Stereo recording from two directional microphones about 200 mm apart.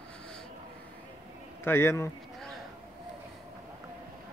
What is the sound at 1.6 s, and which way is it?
Speech, 10° left (ahead or behind).